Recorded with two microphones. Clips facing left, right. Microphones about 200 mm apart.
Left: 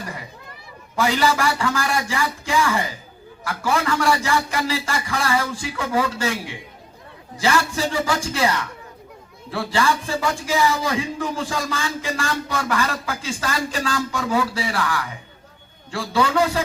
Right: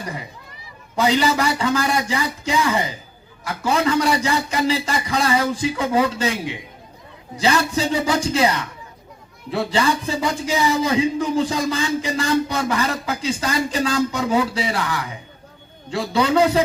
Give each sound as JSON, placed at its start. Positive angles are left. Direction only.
{"t": 0.9, "sound": "a man's voice", "side_deg": -20}